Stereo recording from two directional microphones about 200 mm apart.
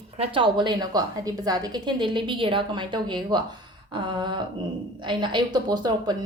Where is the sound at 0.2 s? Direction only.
25° right (ahead or behind).